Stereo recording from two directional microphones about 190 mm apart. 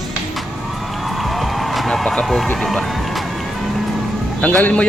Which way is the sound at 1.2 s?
Centre (ahead or behind).